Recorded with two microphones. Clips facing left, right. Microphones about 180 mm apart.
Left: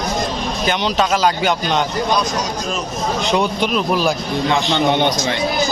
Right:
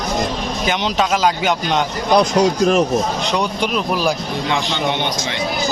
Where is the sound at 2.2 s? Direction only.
60° right (ahead or behind).